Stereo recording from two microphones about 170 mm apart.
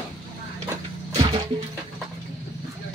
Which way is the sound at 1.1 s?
30° right (ahead or behind).